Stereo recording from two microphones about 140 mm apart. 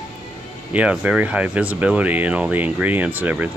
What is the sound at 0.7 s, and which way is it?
Speech, 10° right (ahead or behind).